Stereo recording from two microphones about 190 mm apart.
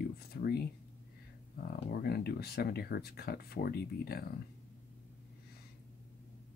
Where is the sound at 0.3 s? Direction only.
55° left (ahead or behind).